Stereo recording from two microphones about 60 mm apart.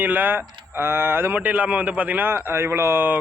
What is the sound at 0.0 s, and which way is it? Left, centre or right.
Speech, right.